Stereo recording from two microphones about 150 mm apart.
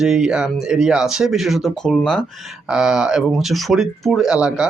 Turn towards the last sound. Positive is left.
turn(degrees=-5)  # may be behind; listen again after turning